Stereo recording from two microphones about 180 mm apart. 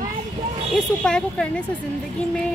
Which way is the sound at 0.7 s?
5° left (ahead or behind).